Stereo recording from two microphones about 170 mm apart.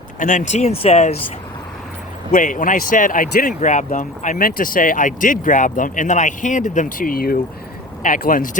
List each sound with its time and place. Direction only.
0.2 s speech: 50° left (ahead or behind)
2.3 s speech: 50° left (ahead or behind)